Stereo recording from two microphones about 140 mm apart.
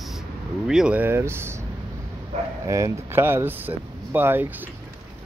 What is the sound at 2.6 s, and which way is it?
Speech, 20° right (ahead or behind).